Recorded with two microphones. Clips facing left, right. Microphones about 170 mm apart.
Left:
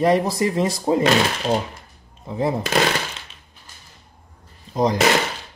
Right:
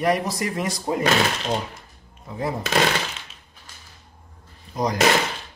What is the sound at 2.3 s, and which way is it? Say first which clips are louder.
Speech: left 6 dB; 25° left (ahead or behind).